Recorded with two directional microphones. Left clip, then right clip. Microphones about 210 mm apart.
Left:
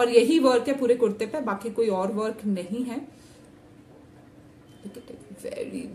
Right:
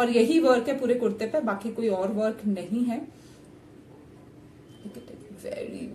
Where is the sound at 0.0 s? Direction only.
35° left (ahead or behind).